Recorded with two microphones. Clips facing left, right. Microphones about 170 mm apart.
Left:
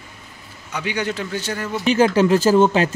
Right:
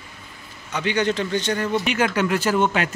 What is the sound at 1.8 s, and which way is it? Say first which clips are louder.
Speech: left 6 dB; 30° left (ahead or behind).